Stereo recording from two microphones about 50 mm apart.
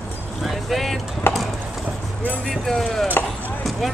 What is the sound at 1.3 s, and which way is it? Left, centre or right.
Clip-clop, left.